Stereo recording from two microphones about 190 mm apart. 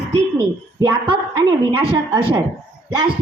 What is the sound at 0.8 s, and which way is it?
A woman's voice, 20° right (ahead or behind).